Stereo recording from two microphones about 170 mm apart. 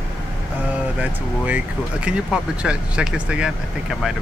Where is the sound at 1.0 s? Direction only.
10° right (ahead or behind).